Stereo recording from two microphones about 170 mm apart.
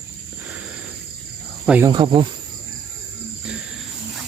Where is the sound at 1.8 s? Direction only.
25° right (ahead or behind).